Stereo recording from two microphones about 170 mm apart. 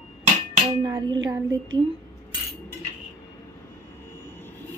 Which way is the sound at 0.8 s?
25° right (ahead or behind).